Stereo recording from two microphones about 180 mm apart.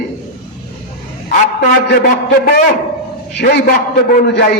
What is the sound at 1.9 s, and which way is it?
A man's voice, 60° left (ahead or behind).